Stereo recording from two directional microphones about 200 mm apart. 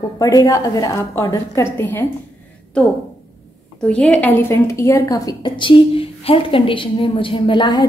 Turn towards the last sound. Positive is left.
turn(degrees=20)  # may be behind; listen again after turning